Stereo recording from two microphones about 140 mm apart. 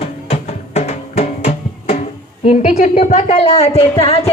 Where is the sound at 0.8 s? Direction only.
50° left (ahead or behind).